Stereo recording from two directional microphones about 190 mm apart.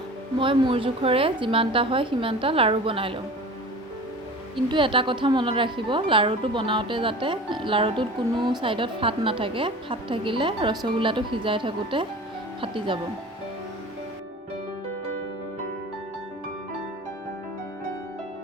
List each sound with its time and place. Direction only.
0.3 s a woman's voice: 25° right (ahead or behind)
4.5 s a woman's voice: 25° right (ahead or behind)